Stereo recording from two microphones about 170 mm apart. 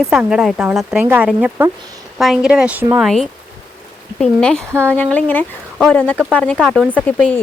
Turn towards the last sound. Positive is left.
turn(degrees=10)  # may be behind; listen again after turning